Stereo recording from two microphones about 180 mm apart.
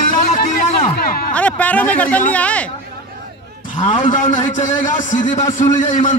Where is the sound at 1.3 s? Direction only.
10° left (ahead or behind).